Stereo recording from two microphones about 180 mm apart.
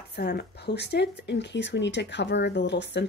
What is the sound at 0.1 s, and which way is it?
Speech, 60° left (ahead or behind).